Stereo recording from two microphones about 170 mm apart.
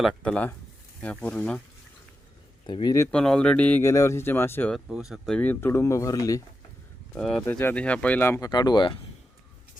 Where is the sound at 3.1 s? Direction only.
5° left (ahead or behind).